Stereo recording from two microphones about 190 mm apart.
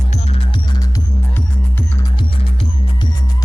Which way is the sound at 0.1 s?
35° left (ahead or behind).